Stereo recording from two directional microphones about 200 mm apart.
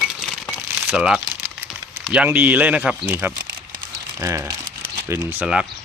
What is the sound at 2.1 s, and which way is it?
Speech, 5° right (ahead or behind).